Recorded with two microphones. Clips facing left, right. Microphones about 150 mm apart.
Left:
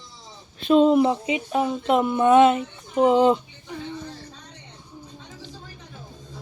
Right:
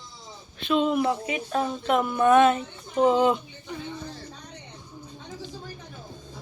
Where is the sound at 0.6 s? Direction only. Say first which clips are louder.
Left 7 dB; 40° left (ahead or behind).